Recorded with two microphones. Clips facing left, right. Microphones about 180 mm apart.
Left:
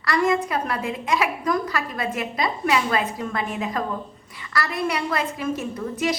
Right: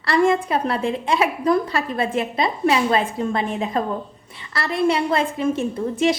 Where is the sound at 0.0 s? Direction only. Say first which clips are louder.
Right 3 dB; 30° right (ahead or behind).